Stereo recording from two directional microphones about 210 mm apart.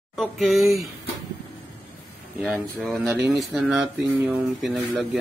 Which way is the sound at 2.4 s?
Centre (ahead or behind).